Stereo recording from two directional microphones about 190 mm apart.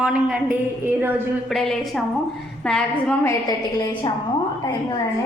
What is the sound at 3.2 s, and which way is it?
A woman's voice, 20° left (ahead or behind).